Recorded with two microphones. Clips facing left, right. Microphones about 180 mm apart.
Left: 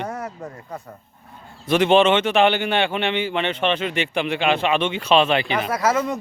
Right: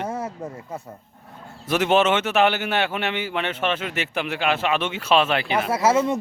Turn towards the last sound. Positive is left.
turn(degrees=-25)  # may be behind; listen again after turning